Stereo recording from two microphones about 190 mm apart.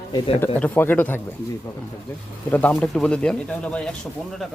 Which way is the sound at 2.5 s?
5° left (ahead or behind).